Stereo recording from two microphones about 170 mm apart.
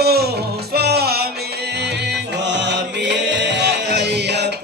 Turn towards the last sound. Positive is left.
turn(degrees=-80)